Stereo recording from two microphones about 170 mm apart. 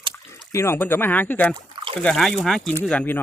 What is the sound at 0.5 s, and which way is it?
Speech, 15° left (ahead or behind).